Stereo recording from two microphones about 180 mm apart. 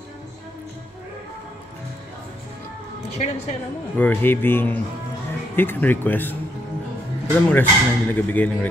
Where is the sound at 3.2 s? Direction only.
40° left (ahead or behind).